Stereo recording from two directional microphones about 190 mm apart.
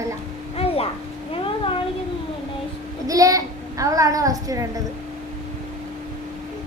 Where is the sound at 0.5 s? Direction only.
30° left (ahead or behind).